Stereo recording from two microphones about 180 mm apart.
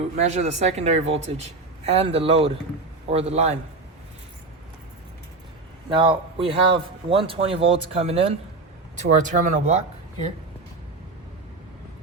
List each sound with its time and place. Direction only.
0.2 s speech: 40° right (ahead or behind)
5.9 s speech: 30° right (ahead or behind)